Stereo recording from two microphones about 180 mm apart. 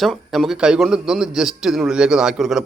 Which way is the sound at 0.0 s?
Centre (ahead or behind).